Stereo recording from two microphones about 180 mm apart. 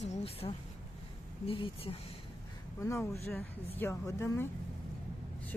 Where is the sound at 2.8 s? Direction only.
15° left (ahead or behind).